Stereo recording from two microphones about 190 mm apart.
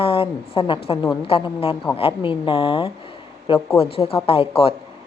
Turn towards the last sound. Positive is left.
turn(degrees=30)  # may be behind; listen again after turning